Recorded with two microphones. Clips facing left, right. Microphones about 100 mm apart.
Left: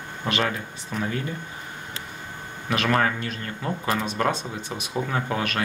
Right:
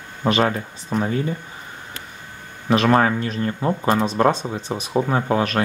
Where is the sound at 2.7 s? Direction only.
30° right (ahead or behind).